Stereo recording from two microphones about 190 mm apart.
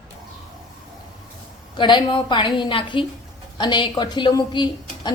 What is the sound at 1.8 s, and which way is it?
A woman's voice, 25° left (ahead or behind).